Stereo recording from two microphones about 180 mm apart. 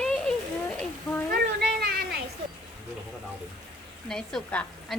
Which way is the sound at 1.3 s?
60° right (ahead or behind).